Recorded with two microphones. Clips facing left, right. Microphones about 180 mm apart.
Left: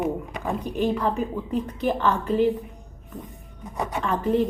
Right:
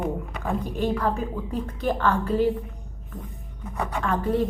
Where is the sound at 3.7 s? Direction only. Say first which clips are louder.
Even; 10° left (ahead or behind).